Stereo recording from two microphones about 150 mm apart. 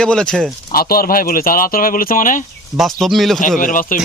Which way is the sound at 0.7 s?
80° left.